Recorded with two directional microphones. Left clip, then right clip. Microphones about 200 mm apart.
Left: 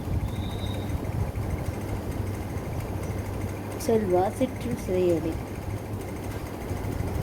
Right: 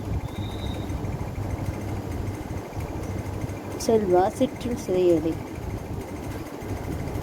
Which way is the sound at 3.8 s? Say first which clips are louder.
Right 3 dB; 25° right (ahead or behind).